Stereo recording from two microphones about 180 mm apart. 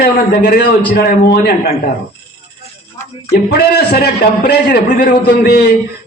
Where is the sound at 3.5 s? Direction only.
60° left (ahead or behind).